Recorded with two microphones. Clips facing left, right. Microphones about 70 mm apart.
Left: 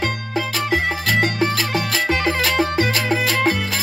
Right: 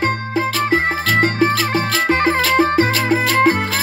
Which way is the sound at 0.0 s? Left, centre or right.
Right.